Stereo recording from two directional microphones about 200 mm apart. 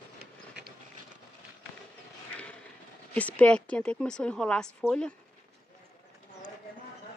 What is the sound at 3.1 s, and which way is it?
A woman's voice, 5° left (ahead or behind).